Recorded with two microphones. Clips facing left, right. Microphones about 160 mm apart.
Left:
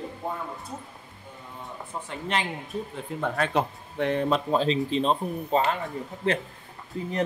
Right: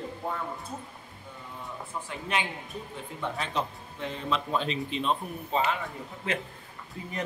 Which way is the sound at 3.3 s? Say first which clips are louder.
Left 7 dB; 60° left (ahead or behind).